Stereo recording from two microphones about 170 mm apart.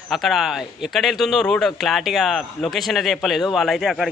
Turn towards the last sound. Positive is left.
turn(degrees=0)  # may be behind; listen again after turning